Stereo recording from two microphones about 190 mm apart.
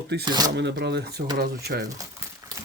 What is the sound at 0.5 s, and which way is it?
Speech, 60° right (ahead or behind).